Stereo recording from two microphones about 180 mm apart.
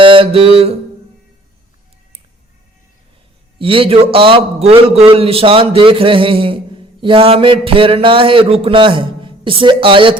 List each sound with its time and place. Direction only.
0.0 s mantra: 30° right (ahead or behind)
3.6 s a man's voice: 30° right (ahead or behind)